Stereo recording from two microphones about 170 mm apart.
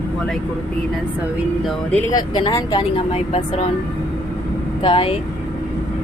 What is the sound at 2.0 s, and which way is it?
Speech, 25° left (ahead or behind).